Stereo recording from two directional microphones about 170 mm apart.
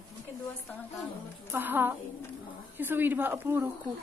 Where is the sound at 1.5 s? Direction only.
10° right (ahead or behind).